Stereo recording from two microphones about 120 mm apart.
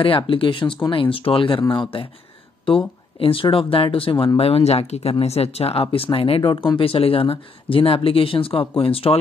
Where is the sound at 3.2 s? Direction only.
50° left (ahead or behind).